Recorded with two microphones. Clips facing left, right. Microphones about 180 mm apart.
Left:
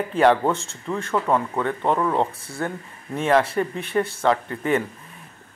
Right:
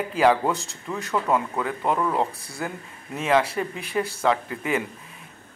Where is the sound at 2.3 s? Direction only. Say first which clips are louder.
Left 1 dB; 35° right (ahead or behind).